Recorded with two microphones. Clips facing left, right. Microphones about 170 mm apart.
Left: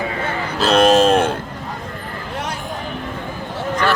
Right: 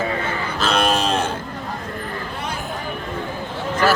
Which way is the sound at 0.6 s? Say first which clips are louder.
Left 8 dB; 40° left (ahead or behind).